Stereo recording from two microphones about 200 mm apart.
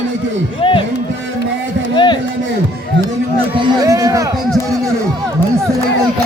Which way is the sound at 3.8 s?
15° right (ahead or behind).